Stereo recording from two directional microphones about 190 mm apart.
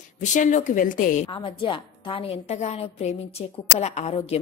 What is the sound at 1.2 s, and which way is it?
A woman's voice, 25° left (ahead or behind).